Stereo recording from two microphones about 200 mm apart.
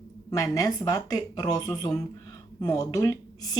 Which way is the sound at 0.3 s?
15° left (ahead or behind).